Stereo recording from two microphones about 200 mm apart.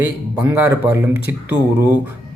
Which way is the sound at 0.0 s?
10° right (ahead or behind).